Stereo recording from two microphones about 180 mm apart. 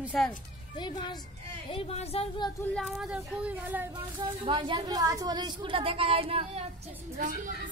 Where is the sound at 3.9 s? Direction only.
25° right (ahead or behind).